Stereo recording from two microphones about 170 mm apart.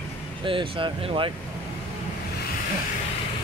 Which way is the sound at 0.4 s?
30° right (ahead or behind).